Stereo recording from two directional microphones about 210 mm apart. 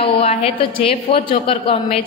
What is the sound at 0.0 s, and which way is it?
A woman's voice, 30° left (ahead or behind).